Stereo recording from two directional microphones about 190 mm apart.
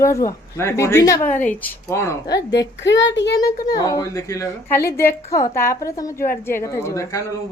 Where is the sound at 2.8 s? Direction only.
70° left (ahead or behind).